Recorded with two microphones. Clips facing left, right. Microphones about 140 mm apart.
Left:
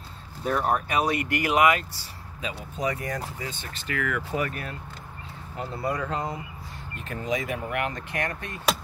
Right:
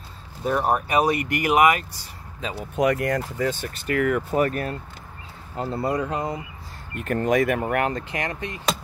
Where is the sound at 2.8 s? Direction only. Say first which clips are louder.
Right 8 dB; 75° right (ahead or behind).